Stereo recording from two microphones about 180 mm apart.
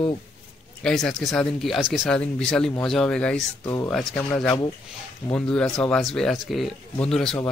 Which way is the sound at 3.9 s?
5° left (ahead or behind).